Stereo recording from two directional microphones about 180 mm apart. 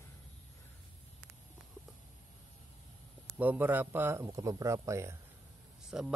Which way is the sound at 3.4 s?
10° right (ahead or behind).